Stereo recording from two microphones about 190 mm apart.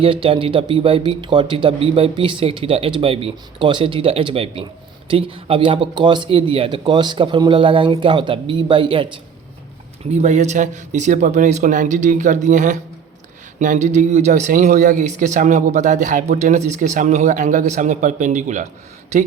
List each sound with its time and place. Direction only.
0.0 s speech: 30° right (ahead or behind)
10.1 s speech: 35° right (ahead or behind)